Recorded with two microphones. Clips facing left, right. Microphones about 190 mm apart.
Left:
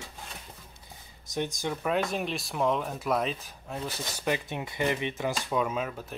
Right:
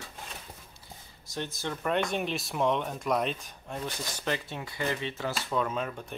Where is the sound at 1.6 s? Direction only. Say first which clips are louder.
Right 1 dB; 10° left (ahead or behind).